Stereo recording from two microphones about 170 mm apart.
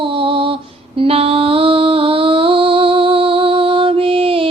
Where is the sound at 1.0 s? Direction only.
35° right (ahead or behind).